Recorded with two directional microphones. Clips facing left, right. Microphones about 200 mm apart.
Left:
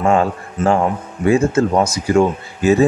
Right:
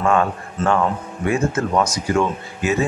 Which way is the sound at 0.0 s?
25° left (ahead or behind).